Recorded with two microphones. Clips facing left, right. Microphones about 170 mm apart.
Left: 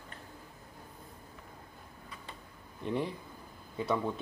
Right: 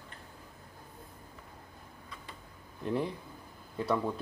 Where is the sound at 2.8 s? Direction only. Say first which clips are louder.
Right 1 dB; centre (ahead or behind).